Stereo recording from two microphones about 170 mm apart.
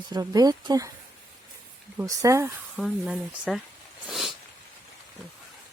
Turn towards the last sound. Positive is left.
turn(degrees=0)  # may be behind; listen again after turning